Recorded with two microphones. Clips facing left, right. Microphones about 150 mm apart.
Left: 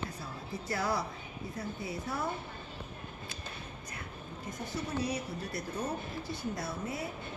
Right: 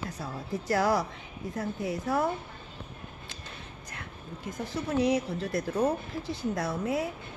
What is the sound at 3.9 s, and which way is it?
Speech, 90° right.